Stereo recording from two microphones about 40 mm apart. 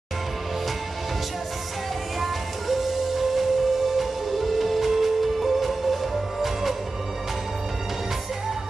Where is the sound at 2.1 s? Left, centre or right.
Centre.